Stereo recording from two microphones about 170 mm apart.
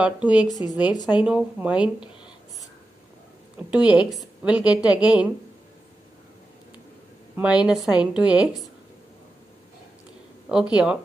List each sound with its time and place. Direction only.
0.0 s a woman's voice: 5° right (ahead or behind)
0.5 s speech: 25° left (ahead or behind)
1.2 s a woman's voice: 5° right (ahead or behind)
3.5 s a woman's voice: 5° right (ahead or behind)
7.3 s a woman's voice: 5° right (ahead or behind)
10.5 s a woman's voice: 5° right (ahead or behind)